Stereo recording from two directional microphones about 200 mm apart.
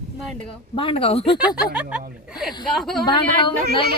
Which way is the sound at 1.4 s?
5° right (ahead or behind).